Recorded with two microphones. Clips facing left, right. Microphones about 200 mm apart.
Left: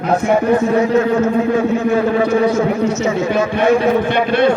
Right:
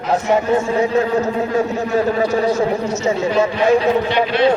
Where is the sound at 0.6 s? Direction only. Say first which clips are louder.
Left 3 dB; 30° right (ahead or behind).